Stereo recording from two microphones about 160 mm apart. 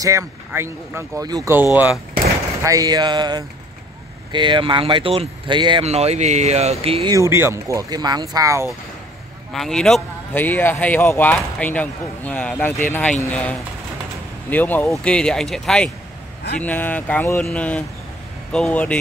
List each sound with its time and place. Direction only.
0.0 s speech: 20° right (ahead or behind)
2.6 s speech: 20° right (ahead or behind)
5.9 s speech: 40° right (ahead or behind)
7.1 s speech: 20° right (ahead or behind)
9.5 s speech: 5° left (ahead or behind)